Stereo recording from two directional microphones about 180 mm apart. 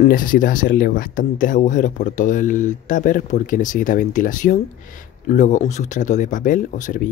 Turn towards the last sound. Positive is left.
turn(degrees=45)  # may be behind; listen again after turning